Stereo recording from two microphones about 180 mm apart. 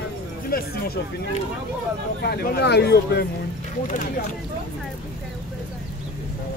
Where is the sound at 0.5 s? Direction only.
55° left (ahead or behind).